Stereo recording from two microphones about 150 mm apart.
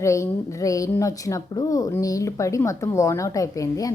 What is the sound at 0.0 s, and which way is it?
A woman's voice, 20° left (ahead or behind).